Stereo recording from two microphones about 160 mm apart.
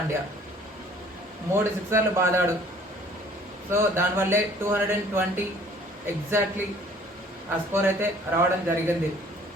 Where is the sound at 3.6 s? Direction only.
15° right (ahead or behind).